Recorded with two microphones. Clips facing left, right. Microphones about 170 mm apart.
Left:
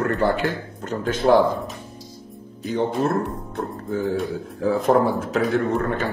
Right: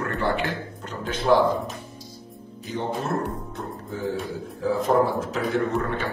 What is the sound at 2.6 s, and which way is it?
Speech, 60° left (ahead or behind).